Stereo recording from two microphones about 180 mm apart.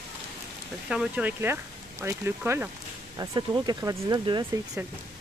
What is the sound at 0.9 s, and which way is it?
Speech, 5° right (ahead or behind).